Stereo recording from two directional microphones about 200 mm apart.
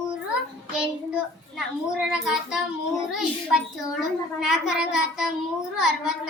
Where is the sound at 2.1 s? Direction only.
5° right (ahead or behind).